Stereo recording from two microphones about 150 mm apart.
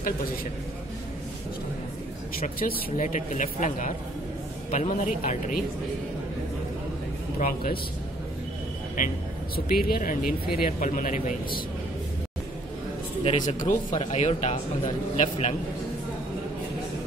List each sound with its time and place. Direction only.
2.4 s speech: 55° left (ahead or behind)
7.3 s speech: 70° left (ahead or behind)
9.0 s speech: 60° left (ahead or behind)
9.7 s speech: 75° left (ahead or behind); by 11.6 s 60° left (ahead or behind)
13.2 s speech: 40° left (ahead or behind)